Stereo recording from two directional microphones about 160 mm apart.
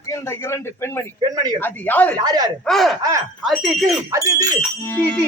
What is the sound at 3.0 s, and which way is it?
Speech, 20° right (ahead or behind).